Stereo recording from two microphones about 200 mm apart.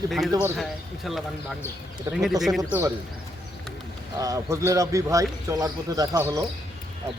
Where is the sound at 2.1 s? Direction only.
15° right (ahead or behind).